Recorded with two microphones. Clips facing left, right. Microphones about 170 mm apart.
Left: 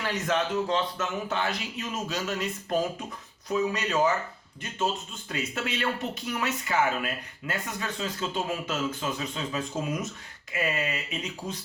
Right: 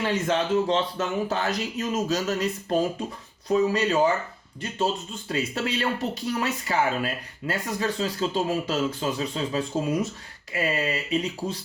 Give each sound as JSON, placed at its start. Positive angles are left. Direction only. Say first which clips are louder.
{"t": 0.0, "sound": "speech", "louder": "right 3 dB", "side_deg": -25}
{"t": 5.3, "sound": "speech", "louder": "right 5 dB", "side_deg": -35}